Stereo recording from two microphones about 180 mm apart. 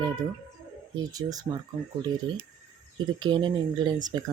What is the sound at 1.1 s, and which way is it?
Speech, 20° right (ahead or behind).